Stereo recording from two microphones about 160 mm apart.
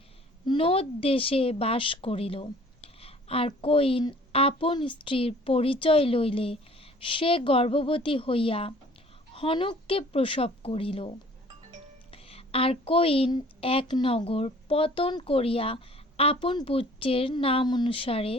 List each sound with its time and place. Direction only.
0.4 s a woman's voice: 35° left (ahead or behind)
12.1 s a woman's voice: 35° left (ahead or behind)